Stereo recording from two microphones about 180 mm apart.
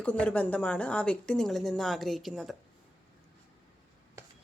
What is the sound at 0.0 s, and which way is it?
Speech, 5° left (ahead or behind).